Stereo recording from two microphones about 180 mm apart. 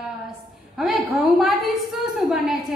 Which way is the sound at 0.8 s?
Centre (ahead or behind).